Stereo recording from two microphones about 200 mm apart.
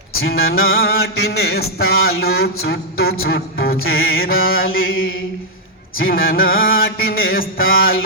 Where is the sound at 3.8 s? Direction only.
90° left.